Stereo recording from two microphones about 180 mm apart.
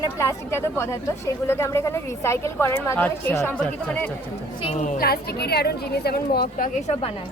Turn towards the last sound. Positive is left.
turn(degrees=40)  # may be behind; listen again after turning